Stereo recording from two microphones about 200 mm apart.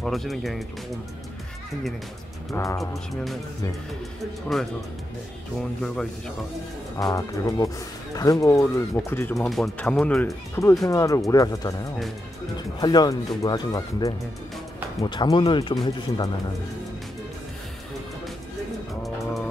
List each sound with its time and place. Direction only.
0.0 s speech: centre (ahead or behind)
2.5 s speech: 15° left (ahead or behind)
4.5 s speech: centre (ahead or behind)
5.8 s speech: 5° left (ahead or behind)
7.0 s speech: 20° left (ahead or behind)
10.9 s speech: 15° left (ahead or behind)